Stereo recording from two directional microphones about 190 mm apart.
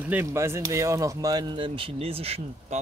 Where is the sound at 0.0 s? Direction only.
10° right (ahead or behind).